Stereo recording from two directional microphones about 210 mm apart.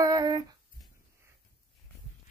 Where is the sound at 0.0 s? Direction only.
15° right (ahead or behind).